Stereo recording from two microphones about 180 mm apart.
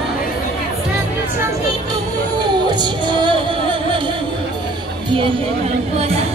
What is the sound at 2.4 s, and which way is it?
Music, 25° right (ahead or behind).